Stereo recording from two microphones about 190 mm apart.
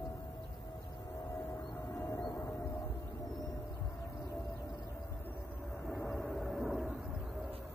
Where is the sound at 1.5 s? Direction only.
15° left (ahead or behind).